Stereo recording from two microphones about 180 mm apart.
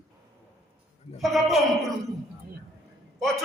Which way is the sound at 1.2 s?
Centre (ahead or behind).